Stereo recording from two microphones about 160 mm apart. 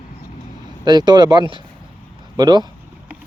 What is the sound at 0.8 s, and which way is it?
Speech, 25° right (ahead or behind).